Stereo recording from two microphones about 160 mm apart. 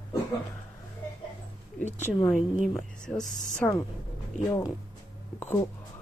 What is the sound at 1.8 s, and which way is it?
Speech, 50° left (ahead or behind).